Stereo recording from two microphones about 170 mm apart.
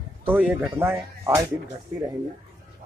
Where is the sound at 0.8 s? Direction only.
15° right (ahead or behind).